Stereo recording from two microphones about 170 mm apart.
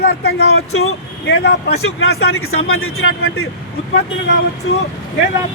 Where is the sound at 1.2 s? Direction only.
80° left.